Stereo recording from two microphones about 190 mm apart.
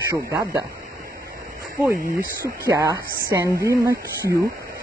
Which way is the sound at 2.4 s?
15° right (ahead or behind).